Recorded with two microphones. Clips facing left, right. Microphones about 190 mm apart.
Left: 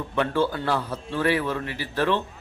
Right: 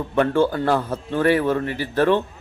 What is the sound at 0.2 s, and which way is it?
A man's voice, 50° right (ahead or behind).